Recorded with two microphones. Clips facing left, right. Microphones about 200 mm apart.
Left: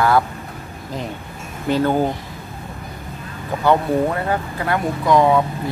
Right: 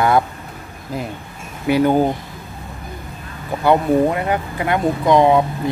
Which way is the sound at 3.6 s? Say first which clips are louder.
Right 2 dB; 15° right (ahead or behind).